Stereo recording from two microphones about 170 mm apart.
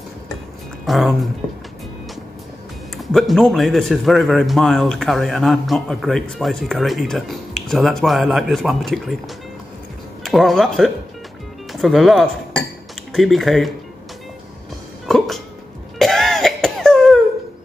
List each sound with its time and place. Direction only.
0.8 s a man's voice: centre (ahead or behind)
3.0 s a man's voice: centre (ahead or behind)
10.2 s a man's voice: centre (ahead or behind)
15.0 s music: centre (ahead or behind)
16.0 s cough: centre (ahead or behind)